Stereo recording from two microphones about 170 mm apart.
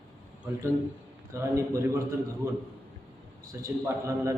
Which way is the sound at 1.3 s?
15° right (ahead or behind).